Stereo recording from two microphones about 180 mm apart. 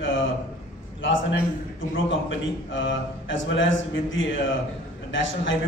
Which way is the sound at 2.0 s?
90° left.